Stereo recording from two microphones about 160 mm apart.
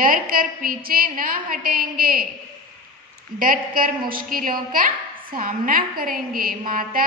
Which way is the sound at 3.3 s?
60° right (ahead or behind).